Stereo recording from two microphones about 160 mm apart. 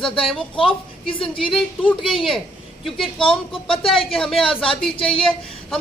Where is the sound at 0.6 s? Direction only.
35° left (ahead or behind).